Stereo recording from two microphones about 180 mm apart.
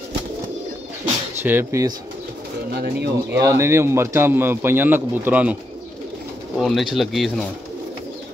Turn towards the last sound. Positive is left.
turn(degrees=0)  # may be behind; listen again after turning